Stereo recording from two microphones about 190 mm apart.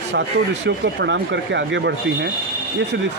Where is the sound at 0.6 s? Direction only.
70° right (ahead or behind).